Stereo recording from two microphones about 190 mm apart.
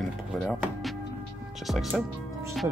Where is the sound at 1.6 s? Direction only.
Centre (ahead or behind).